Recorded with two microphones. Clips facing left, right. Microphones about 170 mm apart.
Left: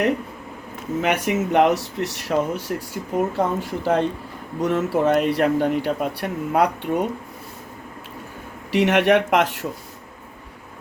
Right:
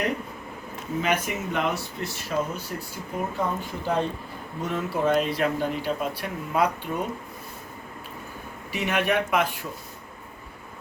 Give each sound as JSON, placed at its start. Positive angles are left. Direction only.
{"t": 1.0, "sound": "speech", "side_deg": 70}
{"t": 4.6, "sound": "speech", "side_deg": 70}
{"t": 8.7, "sound": "speech", "side_deg": 80}